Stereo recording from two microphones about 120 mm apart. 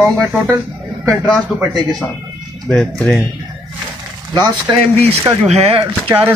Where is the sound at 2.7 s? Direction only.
5° left (ahead or behind).